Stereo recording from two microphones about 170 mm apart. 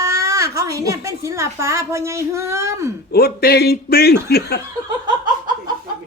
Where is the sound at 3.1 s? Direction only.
65° left (ahead or behind).